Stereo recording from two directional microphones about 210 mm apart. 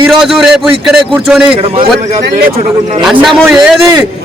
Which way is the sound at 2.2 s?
45° right (ahead or behind).